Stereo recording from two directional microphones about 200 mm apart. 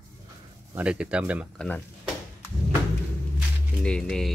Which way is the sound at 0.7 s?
5° right (ahead or behind).